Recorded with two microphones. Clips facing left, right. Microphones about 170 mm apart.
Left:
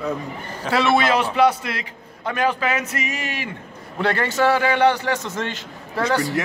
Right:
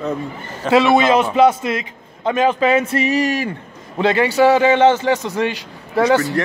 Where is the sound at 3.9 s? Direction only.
15° right (ahead or behind).